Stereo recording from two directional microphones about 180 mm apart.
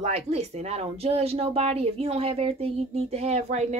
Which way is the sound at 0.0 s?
35° right (ahead or behind).